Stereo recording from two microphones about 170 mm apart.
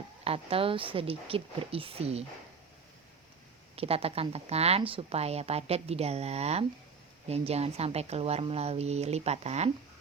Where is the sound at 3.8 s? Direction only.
35° right (ahead or behind).